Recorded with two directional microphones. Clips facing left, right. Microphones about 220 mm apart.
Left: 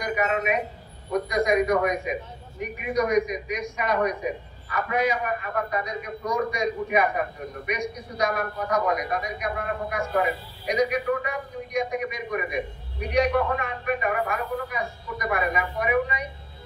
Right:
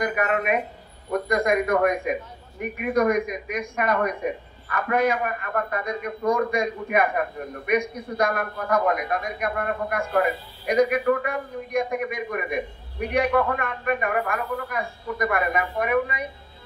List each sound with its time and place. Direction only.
0.0 s a man's voice: 55° right (ahead or behind)